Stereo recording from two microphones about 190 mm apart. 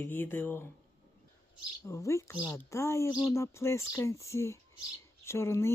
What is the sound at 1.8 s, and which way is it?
A woman's voice, 15° left (ahead or behind).